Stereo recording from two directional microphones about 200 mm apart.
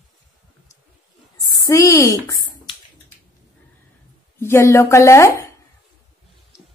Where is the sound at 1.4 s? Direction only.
15° left (ahead or behind).